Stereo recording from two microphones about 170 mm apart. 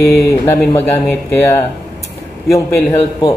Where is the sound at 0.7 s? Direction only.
15° left (ahead or behind).